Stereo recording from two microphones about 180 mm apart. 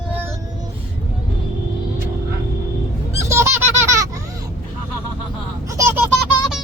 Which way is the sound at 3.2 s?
15° right (ahead or behind).